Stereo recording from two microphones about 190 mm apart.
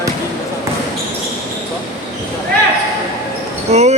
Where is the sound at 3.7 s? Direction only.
35° right (ahead or behind).